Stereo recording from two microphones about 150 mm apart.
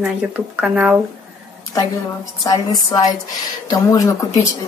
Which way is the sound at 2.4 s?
25° left (ahead or behind).